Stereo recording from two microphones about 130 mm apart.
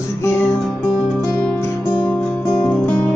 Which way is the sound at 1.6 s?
15° left (ahead or behind).